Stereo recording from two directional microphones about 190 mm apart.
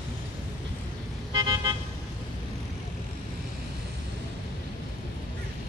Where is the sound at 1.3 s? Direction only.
20° right (ahead or behind).